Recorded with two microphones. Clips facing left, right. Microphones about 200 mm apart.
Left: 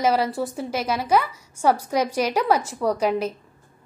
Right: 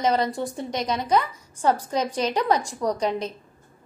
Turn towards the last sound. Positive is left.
turn(degrees=5)  # may be behind; listen again after turning